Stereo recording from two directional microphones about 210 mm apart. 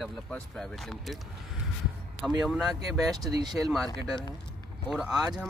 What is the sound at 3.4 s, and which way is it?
Speech, 20° right (ahead or behind).